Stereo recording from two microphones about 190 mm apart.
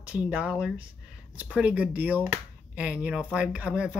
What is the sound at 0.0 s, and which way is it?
Speech, 5° right (ahead or behind).